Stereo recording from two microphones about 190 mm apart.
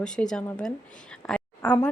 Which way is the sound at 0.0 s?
5° left (ahead or behind).